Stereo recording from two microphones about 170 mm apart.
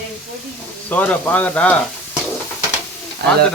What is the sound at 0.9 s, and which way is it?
Speech, 10° left (ahead or behind).